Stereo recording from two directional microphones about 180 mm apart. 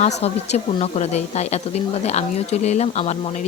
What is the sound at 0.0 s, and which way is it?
A woman's voice, 40° left (ahead or behind).